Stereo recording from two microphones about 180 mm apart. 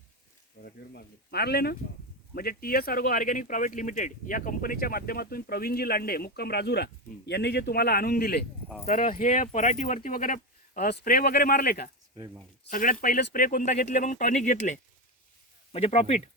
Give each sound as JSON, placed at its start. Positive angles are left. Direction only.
{"t": 0.6, "sound": "speech", "side_deg": 60}